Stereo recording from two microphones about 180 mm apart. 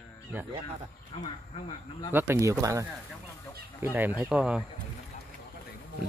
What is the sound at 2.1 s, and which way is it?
Speech, 10° right (ahead or behind).